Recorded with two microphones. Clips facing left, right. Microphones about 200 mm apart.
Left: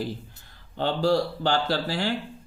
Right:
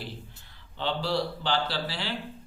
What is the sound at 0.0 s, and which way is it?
A man's voice, 45° left (ahead or behind).